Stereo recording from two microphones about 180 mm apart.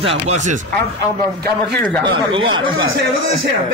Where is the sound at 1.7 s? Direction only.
10° left (ahead or behind).